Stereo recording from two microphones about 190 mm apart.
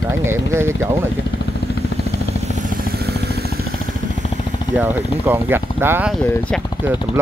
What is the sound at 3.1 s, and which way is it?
Vehicle, 60° right (ahead or behind).